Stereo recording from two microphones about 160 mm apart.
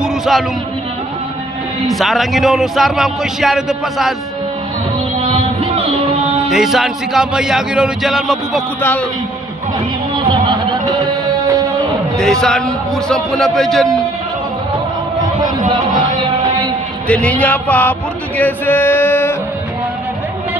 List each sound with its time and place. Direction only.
0.0 s music: centre (ahead or behind)
1.9 s a man's voice: centre (ahead or behind)
5.2 s music: 35° right (ahead or behind)
6.5 s a man's voice: 5° right (ahead or behind)
10.1 s music: 30° right (ahead or behind)
12.2 s a man's voice: 5° left (ahead or behind)
17.1 s a sound: 10° left (ahead or behind)